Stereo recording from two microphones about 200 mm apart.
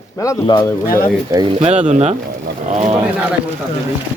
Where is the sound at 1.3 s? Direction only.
20° right (ahead or behind).